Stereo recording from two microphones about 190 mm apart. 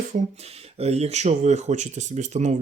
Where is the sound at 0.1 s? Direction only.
35° right (ahead or behind).